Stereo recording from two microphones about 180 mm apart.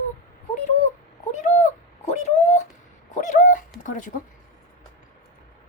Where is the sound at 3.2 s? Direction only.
45° left (ahead or behind).